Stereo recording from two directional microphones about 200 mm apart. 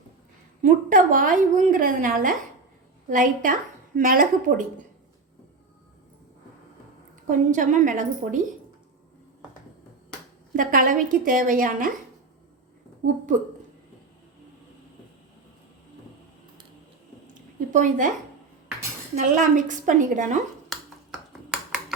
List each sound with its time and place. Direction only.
0.6 s a woman's voice: 40° right (ahead or behind)
7.3 s a woman's voice: 40° right (ahead or behind)
10.5 s a woman's voice: 40° right (ahead or behind)
17.7 s a woman's voice: 40° right (ahead or behind)
19.1 s a woman's voice: 40° right (ahead or behind)